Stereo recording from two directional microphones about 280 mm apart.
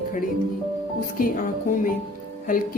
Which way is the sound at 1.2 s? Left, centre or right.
Left.